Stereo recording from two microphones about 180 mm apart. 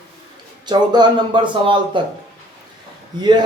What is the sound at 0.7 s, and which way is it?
Speech, 25° right (ahead or behind).